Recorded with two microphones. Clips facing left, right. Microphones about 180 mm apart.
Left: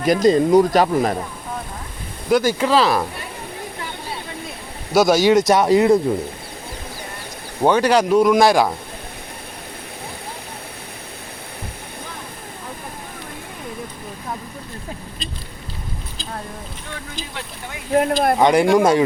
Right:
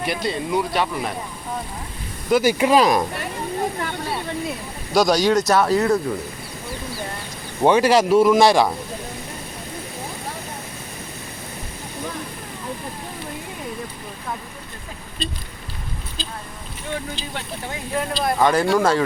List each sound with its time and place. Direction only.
0.0 s speech: 40° left (ahead or behind)
2.3 s speech: 10° right (ahead or behind)
4.9 s speech: 5° left (ahead or behind)
7.6 s a man's voice: 5° right (ahead or behind)
17.9 s speech: 60° left (ahead or behind)
18.3 s speech: 15° left (ahead or behind)